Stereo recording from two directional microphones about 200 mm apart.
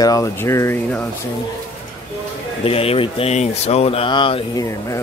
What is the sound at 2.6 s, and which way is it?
Speech, 30° left (ahead or behind).